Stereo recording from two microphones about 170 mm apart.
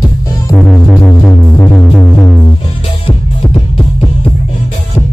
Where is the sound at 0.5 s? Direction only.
10° left (ahead or behind).